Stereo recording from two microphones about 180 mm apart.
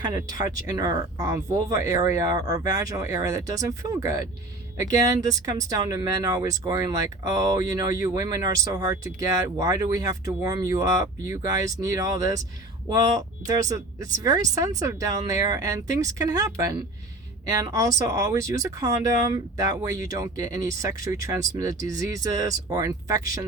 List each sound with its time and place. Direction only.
0.0 s speech: 20° right (ahead or behind)